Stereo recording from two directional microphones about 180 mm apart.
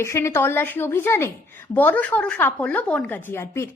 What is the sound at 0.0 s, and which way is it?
Speech, 15° left (ahead or behind).